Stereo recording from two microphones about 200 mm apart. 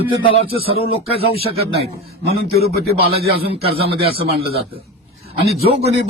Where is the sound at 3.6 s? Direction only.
30° right (ahead or behind).